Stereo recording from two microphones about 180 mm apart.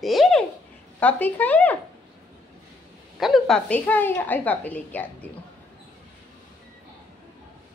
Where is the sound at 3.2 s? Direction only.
Centre (ahead or behind).